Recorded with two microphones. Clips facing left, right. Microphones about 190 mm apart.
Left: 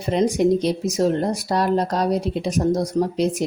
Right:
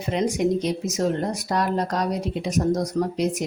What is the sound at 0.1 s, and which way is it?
Speech, 35° left (ahead or behind).